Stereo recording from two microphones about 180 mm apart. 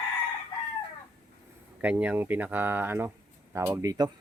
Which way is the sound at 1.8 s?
10° right (ahead or behind).